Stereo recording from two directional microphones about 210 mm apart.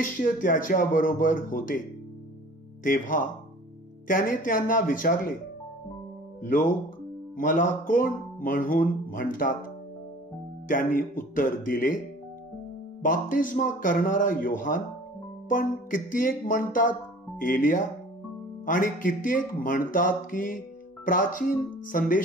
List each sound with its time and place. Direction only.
0.0 s speech: 40° left (ahead or behind)
2.8 s speech: 40° left (ahead or behind)
6.4 s speech: 40° left (ahead or behind)
10.7 s speech: 40° left (ahead or behind)
13.0 s speech: 40° left (ahead or behind)